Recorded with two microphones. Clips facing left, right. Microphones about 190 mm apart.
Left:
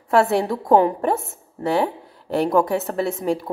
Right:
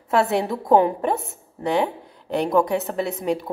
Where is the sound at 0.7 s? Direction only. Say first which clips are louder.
Left 1 dB; 20° right (ahead or behind).